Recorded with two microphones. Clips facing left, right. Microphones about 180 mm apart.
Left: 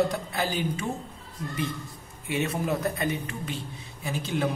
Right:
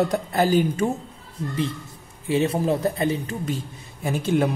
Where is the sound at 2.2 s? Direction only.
30° right (ahead or behind).